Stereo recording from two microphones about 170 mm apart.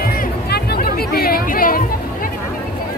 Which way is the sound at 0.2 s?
65° left (ahead or behind).